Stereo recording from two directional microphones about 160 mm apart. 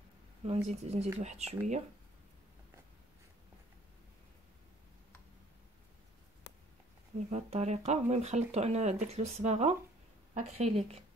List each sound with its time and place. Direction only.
0.5 s speech: 45° right (ahead or behind)
7.2 s speech: 45° right (ahead or behind)